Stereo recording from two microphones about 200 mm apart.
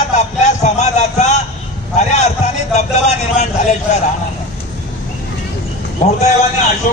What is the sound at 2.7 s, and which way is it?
A man's voice, 35° left (ahead or behind).